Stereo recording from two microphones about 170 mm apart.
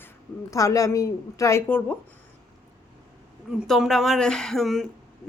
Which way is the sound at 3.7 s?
Centre (ahead or behind).